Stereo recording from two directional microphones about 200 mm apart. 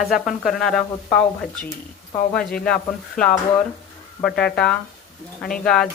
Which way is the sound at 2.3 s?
5° left (ahead or behind).